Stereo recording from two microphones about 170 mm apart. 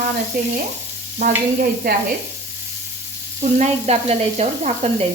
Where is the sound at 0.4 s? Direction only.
55° right (ahead or behind).